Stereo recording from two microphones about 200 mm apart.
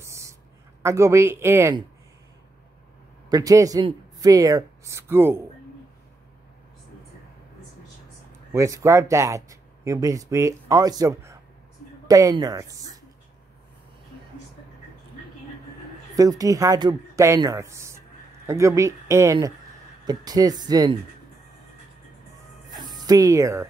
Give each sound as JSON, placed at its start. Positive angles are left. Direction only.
{"t": 0.0, "sound": "a sound", "side_deg": -15}
{"t": 0.8, "sound": "speech", "side_deg": -15}
{"t": 3.3, "sound": "speech", "side_deg": -15}
{"t": 8.5, "sound": "speech", "side_deg": -15}
{"t": 16.2, "sound": "speech", "side_deg": -15}
{"t": 22.8, "sound": "speech", "side_deg": -20}